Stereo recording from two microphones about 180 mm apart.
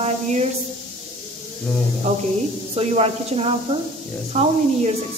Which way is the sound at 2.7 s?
35° right (ahead or behind).